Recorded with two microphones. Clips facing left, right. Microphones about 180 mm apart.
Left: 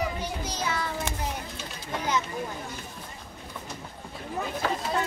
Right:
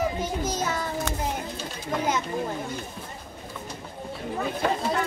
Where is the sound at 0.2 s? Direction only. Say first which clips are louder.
Right 4 dB; 45° right (ahead or behind).